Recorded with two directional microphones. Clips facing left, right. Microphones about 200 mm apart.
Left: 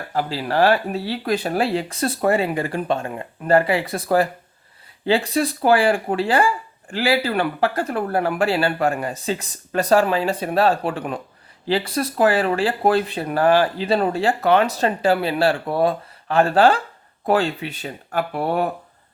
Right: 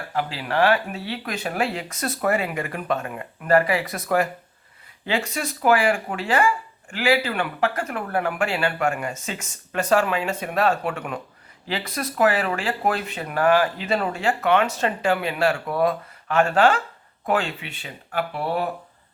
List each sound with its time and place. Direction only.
0.1 s speech: 35° left (ahead or behind)